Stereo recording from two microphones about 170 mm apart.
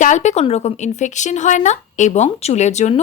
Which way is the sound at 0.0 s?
45° left (ahead or behind).